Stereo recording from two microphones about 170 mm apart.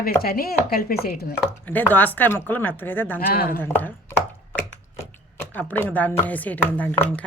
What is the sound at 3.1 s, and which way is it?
Speech, 60° left (ahead or behind).